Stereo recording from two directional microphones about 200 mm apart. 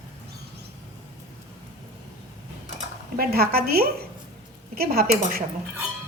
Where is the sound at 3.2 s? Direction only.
50° right (ahead or behind).